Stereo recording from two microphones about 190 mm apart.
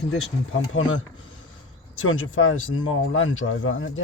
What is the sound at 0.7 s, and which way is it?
Speech, 90° left.